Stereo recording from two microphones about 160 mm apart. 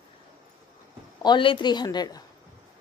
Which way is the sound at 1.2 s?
30° left (ahead or behind).